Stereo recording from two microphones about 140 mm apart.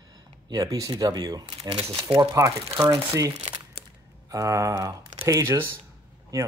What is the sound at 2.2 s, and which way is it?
Speech, 25° right (ahead or behind).